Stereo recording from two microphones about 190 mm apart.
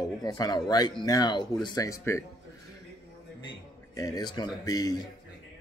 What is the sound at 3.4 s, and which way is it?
A man's voice, 20° left (ahead or behind).